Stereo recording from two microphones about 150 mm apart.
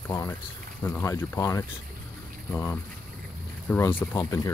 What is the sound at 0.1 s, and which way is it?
Speech, 20° left (ahead or behind).